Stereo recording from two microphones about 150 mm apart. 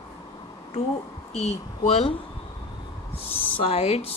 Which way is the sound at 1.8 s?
45° left (ahead or behind).